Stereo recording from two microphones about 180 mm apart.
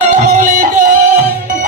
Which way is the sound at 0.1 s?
45° right (ahead or behind).